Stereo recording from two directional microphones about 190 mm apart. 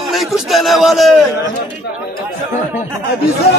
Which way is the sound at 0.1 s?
Centre (ahead or behind).